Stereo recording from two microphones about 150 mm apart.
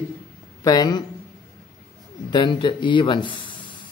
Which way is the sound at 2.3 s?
30° left (ahead or behind).